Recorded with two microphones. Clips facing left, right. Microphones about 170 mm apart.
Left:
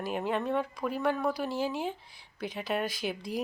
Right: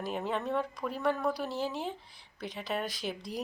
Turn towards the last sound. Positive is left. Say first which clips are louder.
# left 3 dB
turn(degrees=0)  # may be behind; listen again after turning